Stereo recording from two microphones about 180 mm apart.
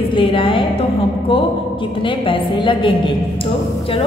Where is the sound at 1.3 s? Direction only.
30° left (ahead or behind).